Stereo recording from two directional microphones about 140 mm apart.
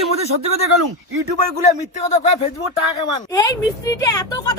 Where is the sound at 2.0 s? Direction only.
55° left (ahead or behind).